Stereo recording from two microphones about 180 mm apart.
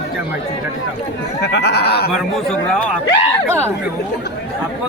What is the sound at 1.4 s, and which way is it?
Speech, 65° left (ahead or behind).